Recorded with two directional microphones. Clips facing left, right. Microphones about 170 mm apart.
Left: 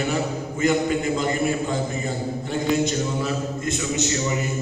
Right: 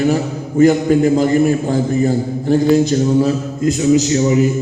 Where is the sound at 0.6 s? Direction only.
40° right (ahead or behind).